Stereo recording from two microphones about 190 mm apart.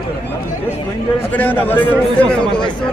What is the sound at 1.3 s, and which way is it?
Speech, 10° left (ahead or behind).